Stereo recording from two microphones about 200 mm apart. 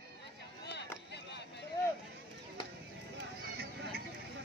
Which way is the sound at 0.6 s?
55° left (ahead or behind).